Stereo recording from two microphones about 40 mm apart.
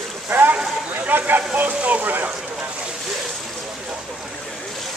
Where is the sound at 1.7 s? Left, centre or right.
Right.